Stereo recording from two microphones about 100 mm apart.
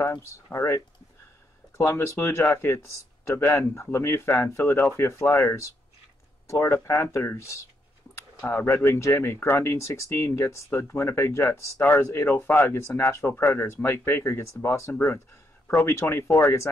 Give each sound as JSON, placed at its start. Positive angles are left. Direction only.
{"t": 0.3, "sound": "speech", "side_deg": 30}